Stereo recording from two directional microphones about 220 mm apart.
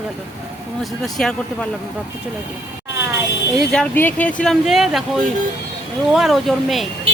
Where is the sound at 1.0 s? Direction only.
5° left (ahead or behind).